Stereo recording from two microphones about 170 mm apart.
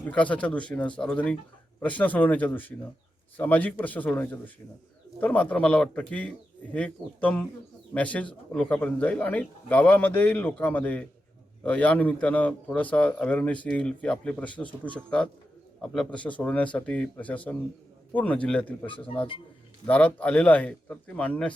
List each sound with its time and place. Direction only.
0.0 s a man's voice: 10° left (ahead or behind)
18.9 s a man's voice: 30° left (ahead or behind)
19.9 s a man's voice: 10° left (ahead or behind)